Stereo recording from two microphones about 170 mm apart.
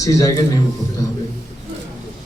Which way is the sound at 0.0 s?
20° left (ahead or behind).